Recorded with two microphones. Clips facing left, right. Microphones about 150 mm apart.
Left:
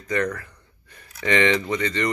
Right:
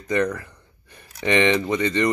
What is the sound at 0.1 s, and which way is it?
Speech, 20° right (ahead or behind).